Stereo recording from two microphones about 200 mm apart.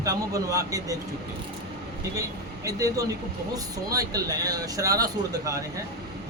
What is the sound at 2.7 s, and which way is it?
Speech, 15° right (ahead or behind).